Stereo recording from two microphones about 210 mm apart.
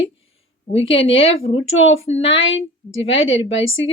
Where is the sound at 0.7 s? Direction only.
25° left (ahead or behind).